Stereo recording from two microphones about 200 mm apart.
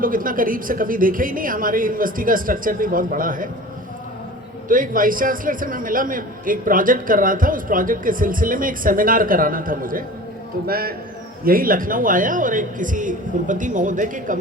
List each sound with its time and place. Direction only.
0.0 s a man's voice: 45° right (ahead or behind)
4.7 s a man's voice: 45° right (ahead or behind)